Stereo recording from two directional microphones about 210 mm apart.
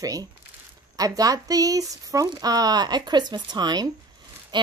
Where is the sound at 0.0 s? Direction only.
15° right (ahead or behind).